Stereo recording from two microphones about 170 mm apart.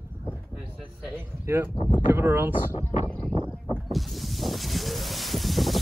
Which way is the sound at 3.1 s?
5° left (ahead or behind).